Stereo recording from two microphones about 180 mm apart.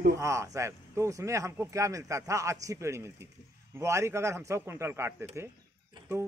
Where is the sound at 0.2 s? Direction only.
15° right (ahead or behind).